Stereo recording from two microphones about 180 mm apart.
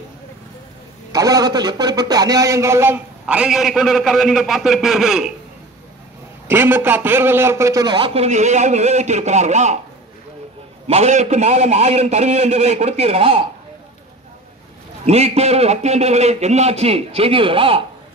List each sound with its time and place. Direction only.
1.1 s a man's voice: 20° right (ahead or behind); by 5.3 s centre (ahead or behind)
6.4 s a man's voice: 10° right (ahead or behind); by 9.8 s 40° right (ahead or behind)
10.9 s a man's voice: 40° right (ahead or behind)
15.0 s a man's voice: 35° right (ahead or behind)